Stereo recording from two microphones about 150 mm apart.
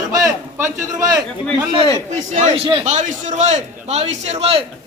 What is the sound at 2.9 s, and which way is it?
A man's voice, 55° right (ahead or behind).